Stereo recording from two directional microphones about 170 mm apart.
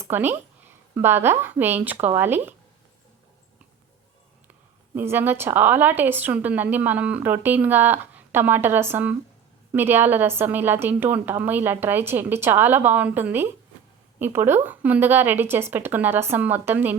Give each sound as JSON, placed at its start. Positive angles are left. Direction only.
{"t": 0.0, "sound": "speech", "side_deg": -15}
{"t": 4.9, "sound": "a woman's voice", "side_deg": -10}